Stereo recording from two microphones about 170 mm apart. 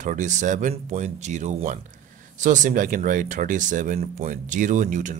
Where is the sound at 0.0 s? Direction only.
45° right (ahead or behind).